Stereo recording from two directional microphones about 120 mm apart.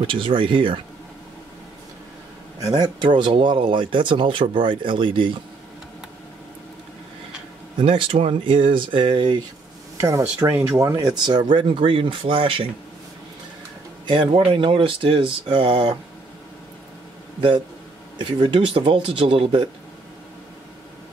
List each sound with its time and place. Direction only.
0.0 s speech: 45° right (ahead or behind)
2.6 s speech: 35° right (ahead or behind)
7.8 s speech: 45° right (ahead or behind)
14.0 s speech: 45° right (ahead or behind)
18.1 s speech: 40° right (ahead or behind)